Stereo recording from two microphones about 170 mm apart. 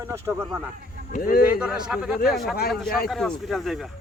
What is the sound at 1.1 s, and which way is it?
Speech, 60° left (ahead or behind).